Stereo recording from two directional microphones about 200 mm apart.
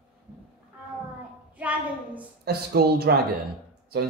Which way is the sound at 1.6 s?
5° right (ahead or behind).